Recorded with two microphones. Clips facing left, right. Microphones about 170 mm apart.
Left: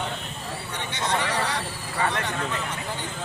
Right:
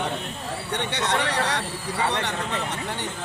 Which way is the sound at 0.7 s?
70° right (ahead or behind).